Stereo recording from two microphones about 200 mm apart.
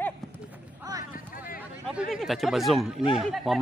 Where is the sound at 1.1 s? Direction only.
45° left (ahead or behind).